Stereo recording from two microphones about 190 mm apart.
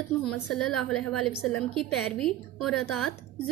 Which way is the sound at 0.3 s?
5° left (ahead or behind).